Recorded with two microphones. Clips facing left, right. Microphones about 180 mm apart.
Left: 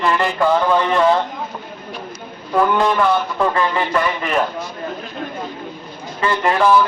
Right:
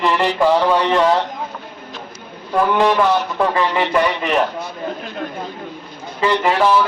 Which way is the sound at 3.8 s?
20° right (ahead or behind).